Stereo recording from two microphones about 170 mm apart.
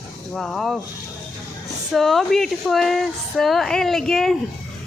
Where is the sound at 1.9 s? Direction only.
Centre (ahead or behind).